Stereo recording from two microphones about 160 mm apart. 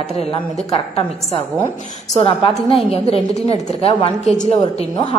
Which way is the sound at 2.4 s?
35° left (ahead or behind).